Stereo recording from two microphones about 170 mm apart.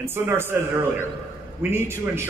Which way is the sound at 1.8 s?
15° right (ahead or behind).